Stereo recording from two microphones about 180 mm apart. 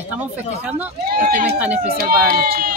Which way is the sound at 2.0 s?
55° right (ahead or behind).